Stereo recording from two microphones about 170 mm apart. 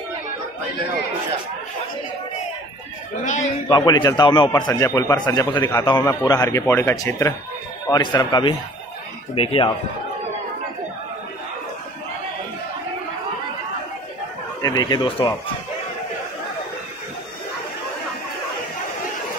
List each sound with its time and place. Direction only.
3.6 s a man's voice: 25° left (ahead or behind)
14.6 s a man's voice: 25° left (ahead or behind)